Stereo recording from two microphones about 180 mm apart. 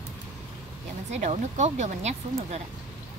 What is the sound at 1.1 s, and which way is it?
Speech, 40° right (ahead or behind).